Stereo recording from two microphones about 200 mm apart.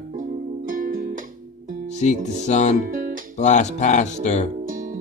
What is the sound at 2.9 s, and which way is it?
Music, 45° right (ahead or behind).